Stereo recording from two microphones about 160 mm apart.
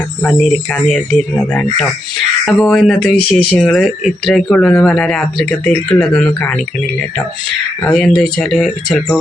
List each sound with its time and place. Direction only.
0.2 s speech: 5° left (ahead or behind)
2.4 s speech: 5° left (ahead or behind)
7.9 s speech: 5° left (ahead or behind)